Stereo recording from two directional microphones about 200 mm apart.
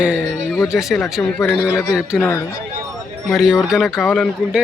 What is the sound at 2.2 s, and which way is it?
Speech, 15° left (ahead or behind).